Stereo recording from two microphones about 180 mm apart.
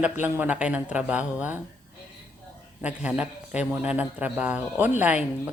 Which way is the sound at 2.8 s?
5° right (ahead or behind).